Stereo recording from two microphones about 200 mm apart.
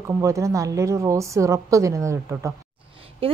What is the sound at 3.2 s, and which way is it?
Speech, 30° right (ahead or behind).